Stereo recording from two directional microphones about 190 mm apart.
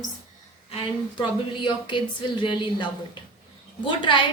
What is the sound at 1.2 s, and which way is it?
A woman's voice, 25° left (ahead or behind).